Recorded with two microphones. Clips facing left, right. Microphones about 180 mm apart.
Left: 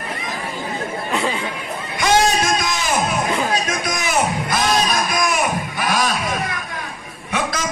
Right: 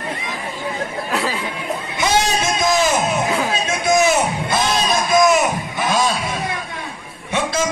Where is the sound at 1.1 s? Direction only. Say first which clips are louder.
Left 1 dB; 5° right (ahead or behind).